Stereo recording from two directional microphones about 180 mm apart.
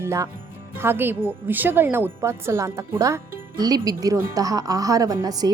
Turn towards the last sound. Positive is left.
turn(degrees=-20)  # may be behind; listen again after turning